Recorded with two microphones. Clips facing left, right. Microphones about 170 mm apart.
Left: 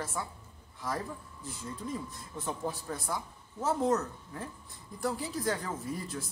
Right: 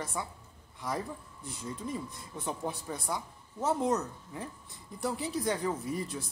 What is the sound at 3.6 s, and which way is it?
Speech, 20° right (ahead or behind).